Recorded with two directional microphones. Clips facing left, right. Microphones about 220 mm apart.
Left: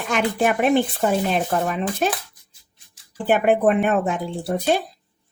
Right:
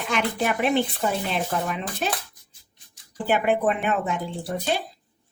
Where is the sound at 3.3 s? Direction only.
45° left (ahead or behind).